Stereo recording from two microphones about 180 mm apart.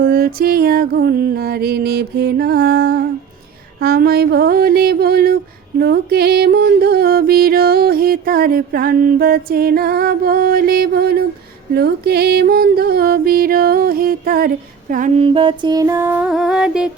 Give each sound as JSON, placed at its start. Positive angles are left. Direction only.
{"t": 0.1, "sound": "music", "side_deg": -55}
{"t": 15.2, "sound": "music", "side_deg": -30}